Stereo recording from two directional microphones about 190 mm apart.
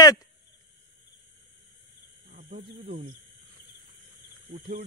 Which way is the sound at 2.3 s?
50° right (ahead or behind).